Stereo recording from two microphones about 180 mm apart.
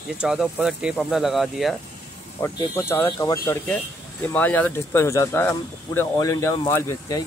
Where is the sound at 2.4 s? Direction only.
15° left (ahead or behind).